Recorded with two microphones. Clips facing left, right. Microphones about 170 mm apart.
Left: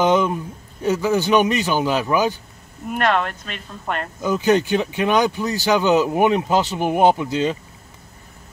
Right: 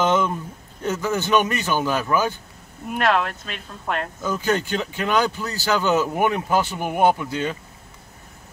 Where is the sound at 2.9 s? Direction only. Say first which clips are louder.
Left 1 dB; centre (ahead or behind).